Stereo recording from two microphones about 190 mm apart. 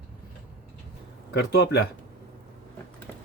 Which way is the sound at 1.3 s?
60° left (ahead or behind).